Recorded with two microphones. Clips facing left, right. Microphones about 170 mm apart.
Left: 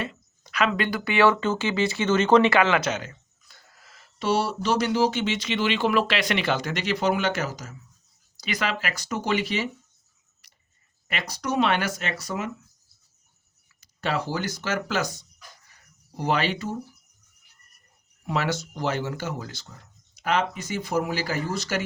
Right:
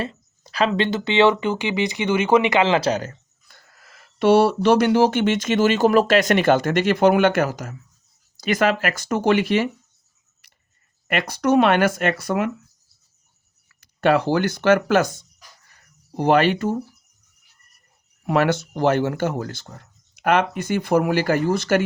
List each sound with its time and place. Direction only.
0.0 s speech: 35° right (ahead or behind)
4.2 s speech: 60° right (ahead or behind)
11.1 s speech: 55° right (ahead or behind)
13.8 s speech: 60° right (ahead or behind)
18.3 s speech: 55° right (ahead or behind)